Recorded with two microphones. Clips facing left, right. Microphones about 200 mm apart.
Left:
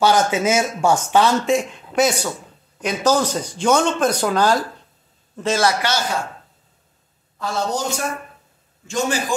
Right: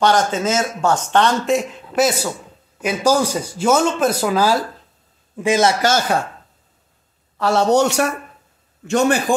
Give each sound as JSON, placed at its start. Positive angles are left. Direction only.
{"t": 0.0, "sound": "a man's voice", "side_deg": 5}
{"t": 5.8, "sound": "speech", "side_deg": -45}
{"t": 7.3, "sound": "a woman's voice", "side_deg": -75}
{"t": 8.8, "sound": "a man's voice", "side_deg": -60}